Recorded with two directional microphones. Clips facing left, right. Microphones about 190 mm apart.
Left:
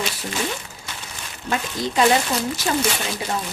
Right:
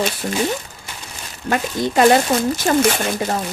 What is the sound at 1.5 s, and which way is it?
A woman's voice, 55° right (ahead or behind).